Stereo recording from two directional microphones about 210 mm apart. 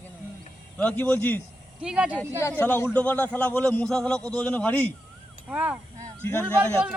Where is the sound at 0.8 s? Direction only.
5° left (ahead or behind).